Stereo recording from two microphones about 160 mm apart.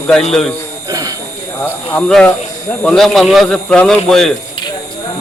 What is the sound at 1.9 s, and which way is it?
Speech, 5° left (ahead or behind).